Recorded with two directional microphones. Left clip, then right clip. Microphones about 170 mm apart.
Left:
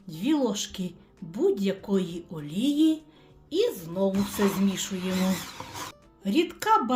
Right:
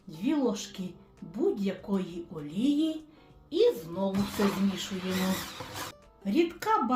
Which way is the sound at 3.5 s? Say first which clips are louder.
Right 1 dB; 65° left (ahead or behind).